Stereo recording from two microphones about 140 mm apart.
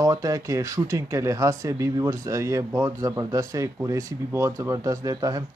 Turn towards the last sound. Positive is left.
turn(degrees=-25)  # may be behind; listen again after turning